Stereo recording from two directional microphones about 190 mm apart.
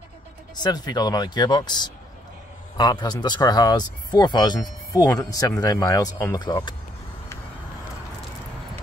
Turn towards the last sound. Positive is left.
turn(degrees=15)  # may be behind; listen again after turning